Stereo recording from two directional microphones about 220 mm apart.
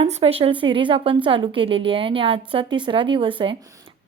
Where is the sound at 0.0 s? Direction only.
25° right (ahead or behind).